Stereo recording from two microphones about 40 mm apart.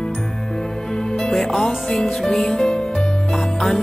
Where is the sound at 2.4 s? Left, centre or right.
Left.